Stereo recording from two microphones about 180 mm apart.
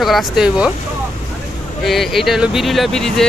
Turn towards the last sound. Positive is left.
turn(degrees=0)  # may be behind; listen again after turning